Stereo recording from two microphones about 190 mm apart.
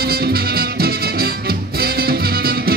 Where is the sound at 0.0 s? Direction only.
55° right (ahead or behind).